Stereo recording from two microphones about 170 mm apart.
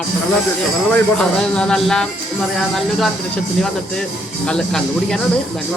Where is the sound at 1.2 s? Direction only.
5° left (ahead or behind).